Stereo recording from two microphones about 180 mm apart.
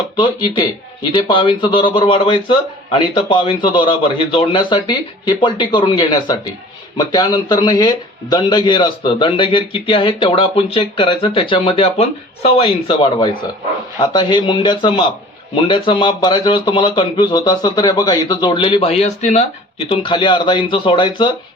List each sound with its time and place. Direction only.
0.2 s a man's voice: 25° left (ahead or behind)
19.9 s a man's voice: 30° left (ahead or behind)